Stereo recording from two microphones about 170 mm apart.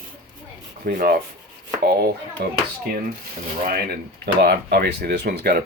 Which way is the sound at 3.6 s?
60° right (ahead or behind).